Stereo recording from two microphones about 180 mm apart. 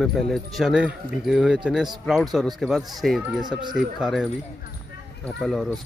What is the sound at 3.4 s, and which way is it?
Speech, 25° right (ahead or behind).